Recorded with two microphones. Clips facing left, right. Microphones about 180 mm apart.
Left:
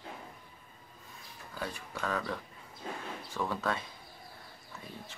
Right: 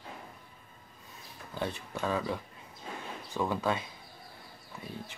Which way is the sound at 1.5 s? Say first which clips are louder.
Right 4 dB; 25° right (ahead or behind).